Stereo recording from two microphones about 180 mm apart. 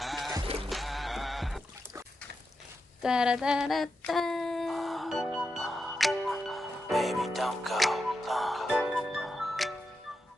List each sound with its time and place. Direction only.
0.0 s music: centre (ahead or behind)
0.4 s music: 30° right (ahead or behind)
0.7 s a sound: centre (ahead or behind)
3.0 s child singing: 5° right (ahead or behind)